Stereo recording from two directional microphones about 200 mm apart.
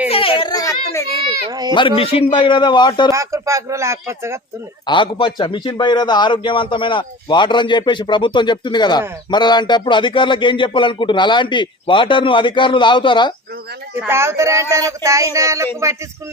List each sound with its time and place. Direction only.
0.1 s children playing: 25° left (ahead or behind)
1.5 s speech: 20° right (ahead or behind)
2.0 s a man's voice: 30° left (ahead or behind)
3.1 s a sound: 15° right (ahead or behind)
4.9 s a man's voice: 25° left (ahead or behind)
13.9 s a sound: 10° right (ahead or behind)